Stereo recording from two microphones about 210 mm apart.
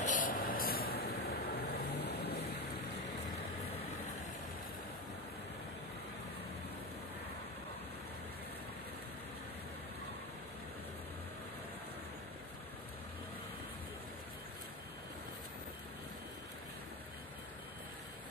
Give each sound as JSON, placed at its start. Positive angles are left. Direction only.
{"t": 0.0, "sound": "vehicle", "side_deg": 40}